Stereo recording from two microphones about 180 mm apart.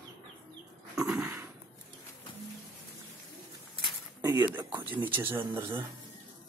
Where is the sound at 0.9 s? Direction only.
5° right (ahead or behind).